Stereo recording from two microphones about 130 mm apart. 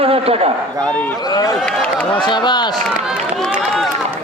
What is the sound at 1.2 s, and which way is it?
Speech, 30° left (ahead or behind).